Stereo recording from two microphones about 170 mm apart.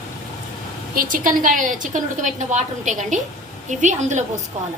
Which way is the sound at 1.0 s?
55° right (ahead or behind).